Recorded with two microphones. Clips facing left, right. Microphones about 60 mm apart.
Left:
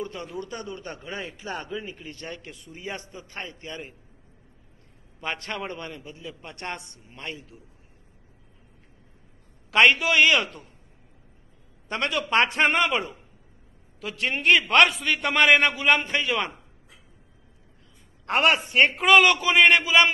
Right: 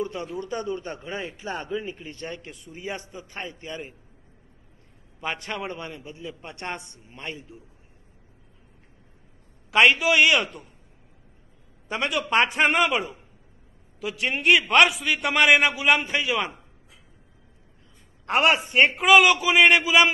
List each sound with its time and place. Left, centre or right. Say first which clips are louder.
0.0 s a man's voice: right 3 dB; right
5.2 s a man's voice: right 1 dB; centre; by 7.6 s right
9.7 s a man's voice: right 1 dB; centre
11.9 s a man's voice: right 1 dB; centre
18.2 s a woman's voice: right 1 dB; centre